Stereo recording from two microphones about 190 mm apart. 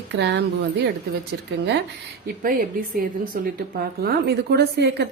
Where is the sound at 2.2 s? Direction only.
50° right (ahead or behind).